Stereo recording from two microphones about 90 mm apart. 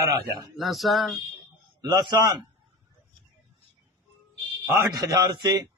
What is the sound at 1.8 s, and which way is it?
Speech, 50° right (ahead or behind).